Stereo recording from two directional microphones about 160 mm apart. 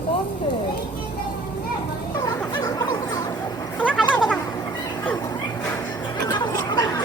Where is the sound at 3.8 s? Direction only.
10° left (ahead or behind).